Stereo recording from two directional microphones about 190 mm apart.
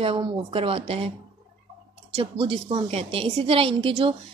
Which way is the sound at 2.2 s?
30° right (ahead or behind).